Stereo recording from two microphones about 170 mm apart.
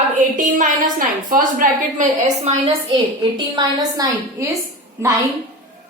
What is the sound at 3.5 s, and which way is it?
Speech, 20° right (ahead or behind).